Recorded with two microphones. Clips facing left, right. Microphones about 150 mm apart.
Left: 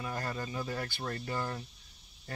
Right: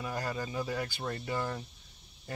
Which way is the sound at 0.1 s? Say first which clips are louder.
Right 3 dB; 20° right (ahead or behind).